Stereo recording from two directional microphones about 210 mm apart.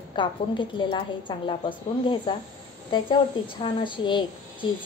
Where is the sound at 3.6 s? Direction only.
25° left (ahead or behind).